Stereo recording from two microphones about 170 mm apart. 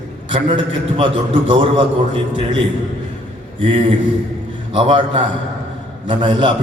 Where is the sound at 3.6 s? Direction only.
30° right (ahead or behind).